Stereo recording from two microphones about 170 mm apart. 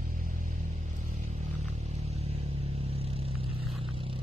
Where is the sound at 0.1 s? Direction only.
50° right (ahead or behind).